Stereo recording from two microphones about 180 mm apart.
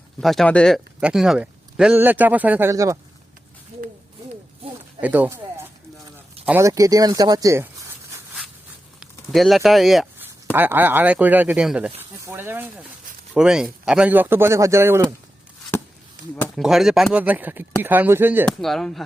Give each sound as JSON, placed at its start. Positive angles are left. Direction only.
{"t": 0.2, "sound": "speech", "side_deg": 0}
{"t": 3.7, "sound": "a sound", "side_deg": -35}
{"t": 4.9, "sound": "speech", "side_deg": -10}
{"t": 9.0, "sound": "speech", "side_deg": 0}
{"t": 16.6, "sound": "speech", "side_deg": 0}
{"t": 18.4, "sound": "speech", "side_deg": 0}